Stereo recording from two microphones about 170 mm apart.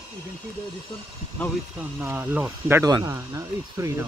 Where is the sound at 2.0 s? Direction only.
10° right (ahead or behind).